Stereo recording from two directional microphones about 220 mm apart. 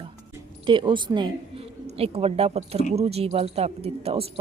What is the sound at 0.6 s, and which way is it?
A woman's voice, 20° right (ahead or behind).